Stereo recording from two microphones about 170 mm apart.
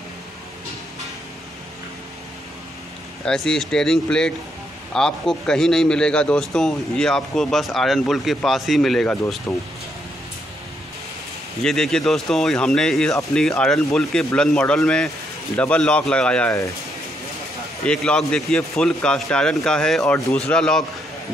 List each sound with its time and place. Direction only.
3.3 s a man's voice: 5° left (ahead or behind)
9.5 s speech: 15° left (ahead or behind)
11.6 s a man's voice: centre (ahead or behind)
17.8 s a man's voice: 5° left (ahead or behind)